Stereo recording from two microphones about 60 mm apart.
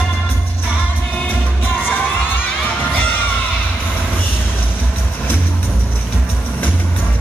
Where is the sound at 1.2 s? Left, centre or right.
Left.